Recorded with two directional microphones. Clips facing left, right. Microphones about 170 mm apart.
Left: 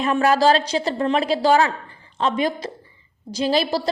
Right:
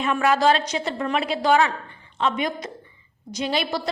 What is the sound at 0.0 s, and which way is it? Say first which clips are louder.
A woman's voice: left 3 dB; 35° left (ahead or behind).